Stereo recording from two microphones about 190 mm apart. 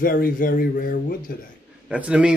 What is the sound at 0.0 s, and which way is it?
Speech, 45° left (ahead or behind).